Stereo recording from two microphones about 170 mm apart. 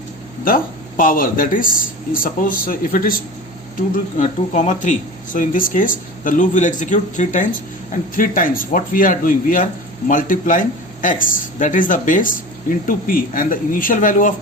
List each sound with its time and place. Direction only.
0.4 s speech: 55° left (ahead or behind)